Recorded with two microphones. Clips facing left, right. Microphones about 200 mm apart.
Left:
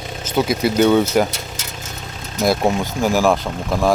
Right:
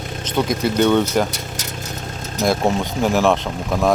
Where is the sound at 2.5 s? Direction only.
Centre (ahead or behind).